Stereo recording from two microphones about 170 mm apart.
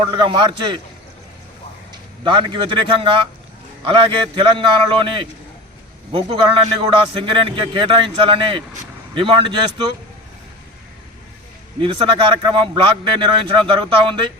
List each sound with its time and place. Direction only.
0.0 s a man's voice: 30° right (ahead or behind)
1.9 s a man's voice: 30° right (ahead or behind)
11.8 s a man's voice: 30° right (ahead or behind)